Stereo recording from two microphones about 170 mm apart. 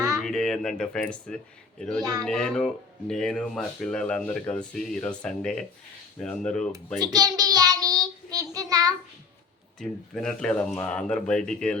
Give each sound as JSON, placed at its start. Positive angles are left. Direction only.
{"t": 0.2, "sound": "speech", "side_deg": 0}
{"t": 7.0, "sound": "child singing", "side_deg": -25}
{"t": 9.8, "sound": "speech", "side_deg": 5}